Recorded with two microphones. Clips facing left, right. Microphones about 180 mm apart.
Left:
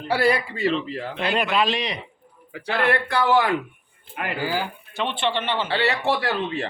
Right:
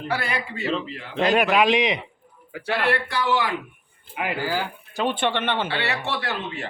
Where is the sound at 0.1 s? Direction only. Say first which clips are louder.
Left 8 dB; 35° left (ahead or behind).